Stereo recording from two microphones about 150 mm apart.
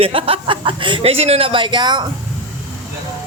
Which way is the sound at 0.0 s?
40° right (ahead or behind).